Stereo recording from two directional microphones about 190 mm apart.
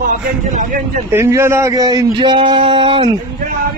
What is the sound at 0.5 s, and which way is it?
Speech, 40° right (ahead or behind).